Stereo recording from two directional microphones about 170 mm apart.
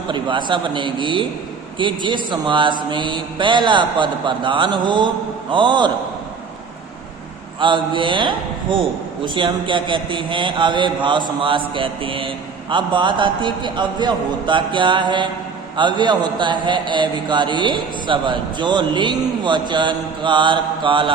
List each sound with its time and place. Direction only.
0.1 s a man's voice: 30° right (ahead or behind)
7.6 s a man's voice: 30° right (ahead or behind)